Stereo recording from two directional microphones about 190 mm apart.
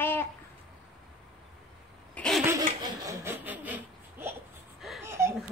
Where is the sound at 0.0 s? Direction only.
10° left (ahead or behind).